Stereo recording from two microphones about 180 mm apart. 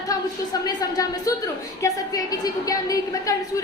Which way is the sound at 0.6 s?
20° left (ahead or behind).